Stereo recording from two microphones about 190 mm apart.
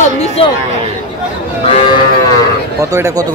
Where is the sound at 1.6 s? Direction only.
30° left (ahead or behind).